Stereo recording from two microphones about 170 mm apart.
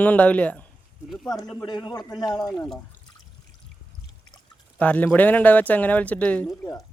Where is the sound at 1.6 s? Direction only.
25° left (ahead or behind).